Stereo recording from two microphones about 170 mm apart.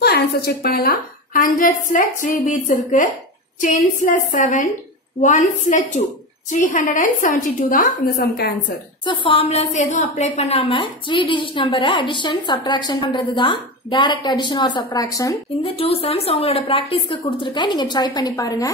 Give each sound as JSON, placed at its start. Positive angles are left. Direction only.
{"t": 0.0, "sound": "a woman's voice", "side_deg": 70}
{"t": 9.0, "sound": "a woman's voice", "side_deg": 30}
{"t": 15.6, "sound": "a woman's voice", "side_deg": 35}